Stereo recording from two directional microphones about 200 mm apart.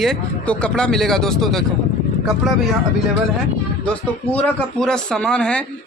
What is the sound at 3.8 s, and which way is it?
Speech, 5° left (ahead or behind).